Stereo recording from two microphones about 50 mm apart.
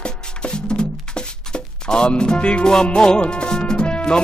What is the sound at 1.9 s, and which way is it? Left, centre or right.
Music, centre.